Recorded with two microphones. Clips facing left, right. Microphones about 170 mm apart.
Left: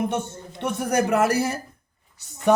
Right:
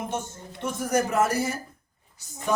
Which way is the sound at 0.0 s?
65° left (ahead or behind).